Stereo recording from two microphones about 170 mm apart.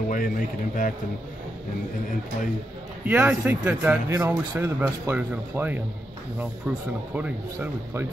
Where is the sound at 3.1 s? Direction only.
10° right (ahead or behind).